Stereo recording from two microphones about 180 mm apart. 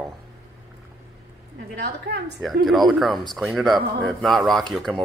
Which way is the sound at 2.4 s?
Centre (ahead or behind).